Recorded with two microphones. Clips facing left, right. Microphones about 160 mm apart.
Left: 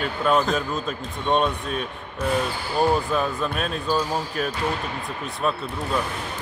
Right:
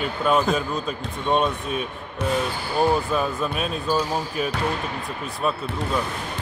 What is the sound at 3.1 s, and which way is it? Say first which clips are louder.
Speech: even; 5° right (ahead or behind).